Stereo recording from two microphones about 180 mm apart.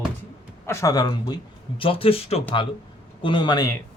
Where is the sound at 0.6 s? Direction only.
15° left (ahead or behind).